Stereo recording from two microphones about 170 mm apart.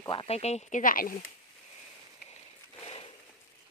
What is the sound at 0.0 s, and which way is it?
Speech, 30° left (ahead or behind).